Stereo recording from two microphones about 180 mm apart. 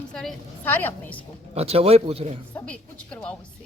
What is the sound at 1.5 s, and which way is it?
Speech, 35° right (ahead or behind).